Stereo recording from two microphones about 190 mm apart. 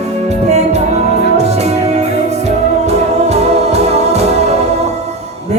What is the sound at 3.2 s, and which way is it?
Music, 35° right (ahead or behind).